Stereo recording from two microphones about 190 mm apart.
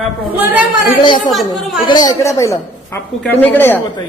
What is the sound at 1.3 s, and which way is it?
Speech, centre (ahead or behind).